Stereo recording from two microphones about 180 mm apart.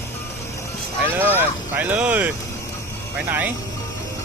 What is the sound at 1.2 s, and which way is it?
Speech, 10° right (ahead or behind).